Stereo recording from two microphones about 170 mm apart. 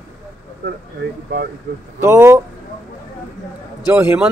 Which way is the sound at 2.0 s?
15° right (ahead or behind).